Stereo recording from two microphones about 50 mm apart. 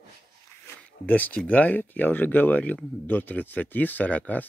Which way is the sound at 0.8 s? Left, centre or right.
Left.